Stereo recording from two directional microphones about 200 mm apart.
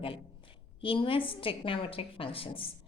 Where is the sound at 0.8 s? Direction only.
25° left (ahead or behind).